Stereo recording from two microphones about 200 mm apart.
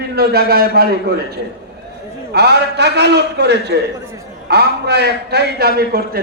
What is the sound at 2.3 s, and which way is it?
A man's voice, 55° right (ahead or behind).